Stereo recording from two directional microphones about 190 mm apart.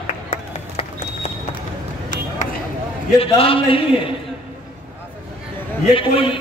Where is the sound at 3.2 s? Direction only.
30° left (ahead or behind).